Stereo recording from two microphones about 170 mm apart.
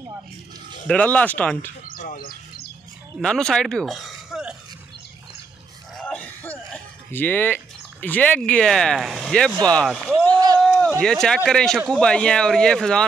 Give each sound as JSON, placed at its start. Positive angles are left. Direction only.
{"t": 0.8, "sound": "speech", "side_deg": 10}
{"t": 1.9, "sound": "bird", "side_deg": 55}
{"t": 3.2, "sound": "speech", "side_deg": 5}
{"t": 5.9, "sound": "a sound", "side_deg": 5}
{"t": 7.1, "sound": "speech", "side_deg": 10}
{"t": 10.3, "sound": "a sound", "side_deg": -25}
{"t": 10.8, "sound": "speech", "side_deg": 5}